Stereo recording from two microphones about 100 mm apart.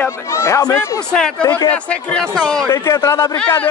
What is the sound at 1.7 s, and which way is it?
Speech, 5° left (ahead or behind).